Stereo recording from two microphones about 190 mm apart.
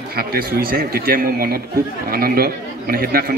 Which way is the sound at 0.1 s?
50° right (ahead or behind).